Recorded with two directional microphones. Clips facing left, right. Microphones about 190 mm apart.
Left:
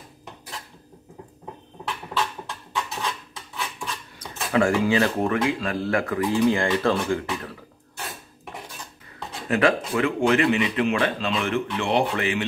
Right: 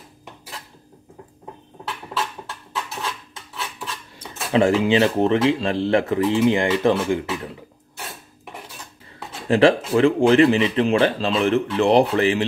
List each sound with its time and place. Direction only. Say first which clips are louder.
4.2 s speech: right 3 dB; 25° right (ahead or behind)
9.5 s a man's voice: right 6 dB; 30° right (ahead or behind)